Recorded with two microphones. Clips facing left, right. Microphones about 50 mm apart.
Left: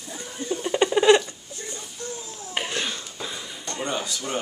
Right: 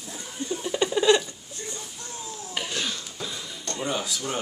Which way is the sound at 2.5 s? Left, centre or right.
Left.